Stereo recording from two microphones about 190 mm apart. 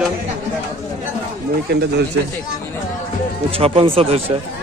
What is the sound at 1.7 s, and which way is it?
Speech, 55° right (ahead or behind).